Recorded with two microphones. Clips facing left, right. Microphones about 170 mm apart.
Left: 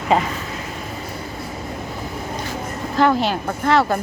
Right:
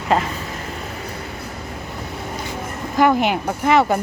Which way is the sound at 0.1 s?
Centre (ahead or behind).